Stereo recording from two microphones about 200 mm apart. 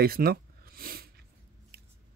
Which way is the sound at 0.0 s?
50° right (ahead or behind).